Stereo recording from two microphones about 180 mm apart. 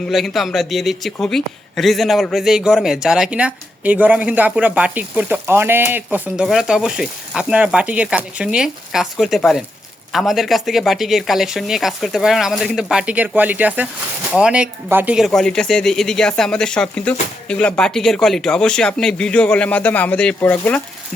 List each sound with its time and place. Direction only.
0.1 s a man's voice: centre (ahead or behind)